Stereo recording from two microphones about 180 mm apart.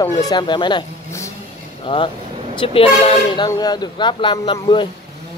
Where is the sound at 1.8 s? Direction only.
30° left (ahead or behind).